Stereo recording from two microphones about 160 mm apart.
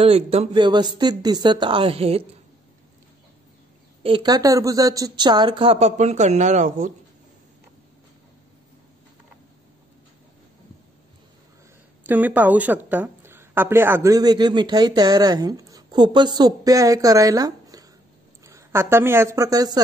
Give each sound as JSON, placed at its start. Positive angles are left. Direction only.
{"t": 0.0, "sound": "speech", "side_deg": -40}
{"t": 4.0, "sound": "speech", "side_deg": -30}
{"t": 12.1, "sound": "a woman's voice", "side_deg": -10}